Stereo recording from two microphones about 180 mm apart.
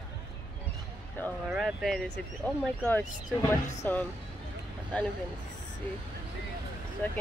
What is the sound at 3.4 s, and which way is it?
Speech, 10° left (ahead or behind).